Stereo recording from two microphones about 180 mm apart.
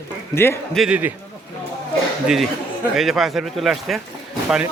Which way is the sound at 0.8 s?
5° right (ahead or behind).